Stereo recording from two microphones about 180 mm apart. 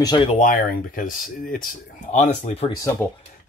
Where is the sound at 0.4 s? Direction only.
50° left (ahead or behind).